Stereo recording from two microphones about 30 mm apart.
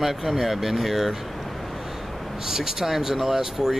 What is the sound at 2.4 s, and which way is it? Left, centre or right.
Speech, centre.